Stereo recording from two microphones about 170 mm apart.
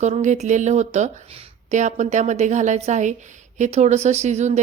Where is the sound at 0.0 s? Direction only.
40° right (ahead or behind).